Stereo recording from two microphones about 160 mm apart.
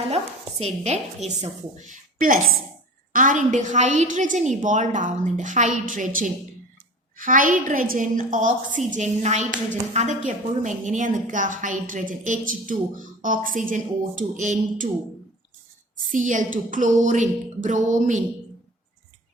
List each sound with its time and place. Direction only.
1.4 s a woman's voice: 50° right (ahead or behind)
16.1 s a woman's voice: 50° right (ahead or behind)